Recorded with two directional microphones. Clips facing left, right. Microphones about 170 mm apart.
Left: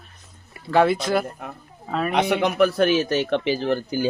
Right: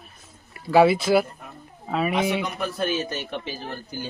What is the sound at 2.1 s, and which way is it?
A man's voice, 75° left (ahead or behind).